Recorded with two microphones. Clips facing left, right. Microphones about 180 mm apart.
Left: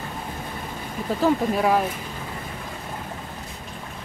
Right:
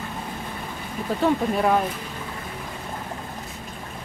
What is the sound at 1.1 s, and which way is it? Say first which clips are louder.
Speech: left 1 dB; centre (ahead or behind).